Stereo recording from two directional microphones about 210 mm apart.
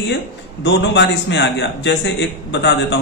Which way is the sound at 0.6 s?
55° left (ahead or behind).